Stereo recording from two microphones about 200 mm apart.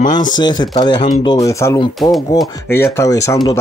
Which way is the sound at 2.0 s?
Centre (ahead or behind).